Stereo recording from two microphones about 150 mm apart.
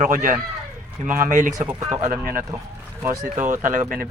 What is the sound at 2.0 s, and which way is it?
Speech, 65° right (ahead or behind).